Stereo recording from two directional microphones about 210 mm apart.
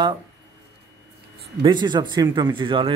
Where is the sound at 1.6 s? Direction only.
20° right (ahead or behind).